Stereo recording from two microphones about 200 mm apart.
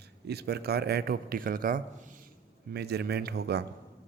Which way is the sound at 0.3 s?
55° right (ahead or behind).